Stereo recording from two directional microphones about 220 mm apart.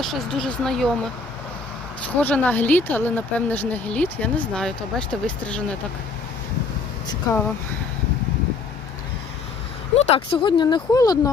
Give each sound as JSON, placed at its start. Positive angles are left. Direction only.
{"t": 0.0, "sound": "speech", "side_deg": 0}
{"t": 2.1, "sound": "a woman's voice", "side_deg": 5}
{"t": 9.9, "sound": "speech", "side_deg": 25}